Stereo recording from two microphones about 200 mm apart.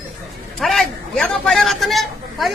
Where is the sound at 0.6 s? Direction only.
Centre (ahead or behind).